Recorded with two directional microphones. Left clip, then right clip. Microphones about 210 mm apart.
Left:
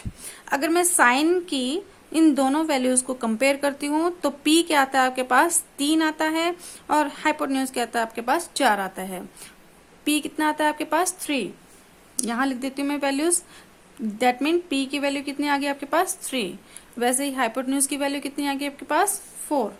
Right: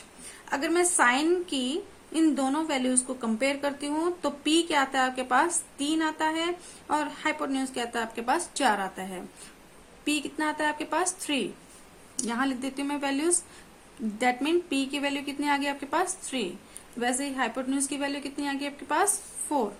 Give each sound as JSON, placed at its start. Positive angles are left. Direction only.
{"t": 0.4, "sound": "a woman's voice", "side_deg": 30}